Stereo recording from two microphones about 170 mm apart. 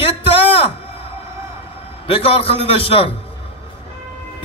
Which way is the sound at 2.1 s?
35° left (ahead or behind).